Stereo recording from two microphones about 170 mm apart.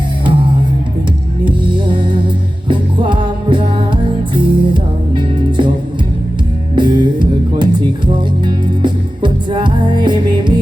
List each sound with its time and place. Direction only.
1.5 s music: 30° right (ahead or behind)
6.7 s music: 25° right (ahead or behind)